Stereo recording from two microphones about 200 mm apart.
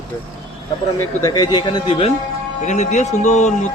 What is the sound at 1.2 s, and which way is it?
Speech, 20° left (ahead or behind).